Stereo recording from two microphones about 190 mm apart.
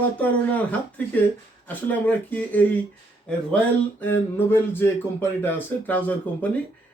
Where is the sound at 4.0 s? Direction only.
10° left (ahead or behind).